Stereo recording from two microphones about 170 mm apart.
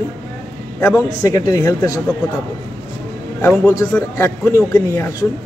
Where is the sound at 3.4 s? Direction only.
15° left (ahead or behind).